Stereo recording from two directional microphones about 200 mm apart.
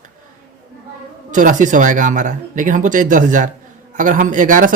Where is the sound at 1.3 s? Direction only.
40° right (ahead or behind).